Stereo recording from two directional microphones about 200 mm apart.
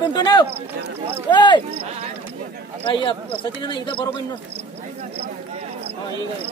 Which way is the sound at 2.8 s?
25° left (ahead or behind).